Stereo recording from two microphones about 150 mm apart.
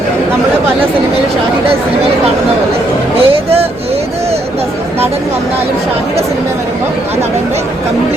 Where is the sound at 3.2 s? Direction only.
40° right (ahead or behind).